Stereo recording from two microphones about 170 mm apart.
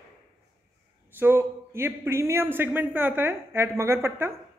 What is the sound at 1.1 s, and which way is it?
A man's voice, 15° right (ahead or behind).